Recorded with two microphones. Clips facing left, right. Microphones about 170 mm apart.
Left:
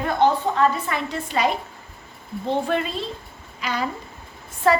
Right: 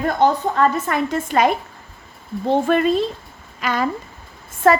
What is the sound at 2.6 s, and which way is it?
A woman's voice, 50° right (ahead or behind).